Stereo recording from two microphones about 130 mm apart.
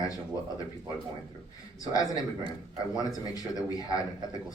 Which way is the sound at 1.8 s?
25° left (ahead or behind).